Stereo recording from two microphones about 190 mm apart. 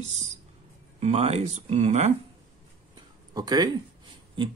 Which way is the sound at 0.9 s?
30° right (ahead or behind).